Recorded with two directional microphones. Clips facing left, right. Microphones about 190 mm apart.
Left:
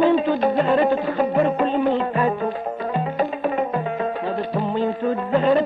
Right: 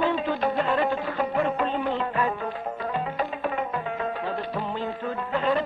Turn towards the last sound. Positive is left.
turn(degrees=35)  # may be behind; listen again after turning